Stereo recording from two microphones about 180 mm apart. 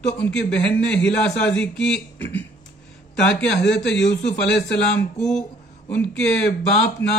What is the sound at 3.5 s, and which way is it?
Speech, 75° left (ahead or behind).